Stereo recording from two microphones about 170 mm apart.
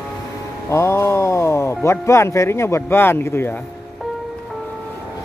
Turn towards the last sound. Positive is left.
turn(degrees=15)  # may be behind; listen again after turning